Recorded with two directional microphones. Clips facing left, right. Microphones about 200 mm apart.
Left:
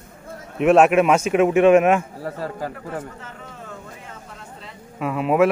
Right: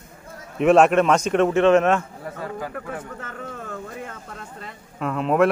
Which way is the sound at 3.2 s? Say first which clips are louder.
Right 4 dB; 50° right (ahead or behind).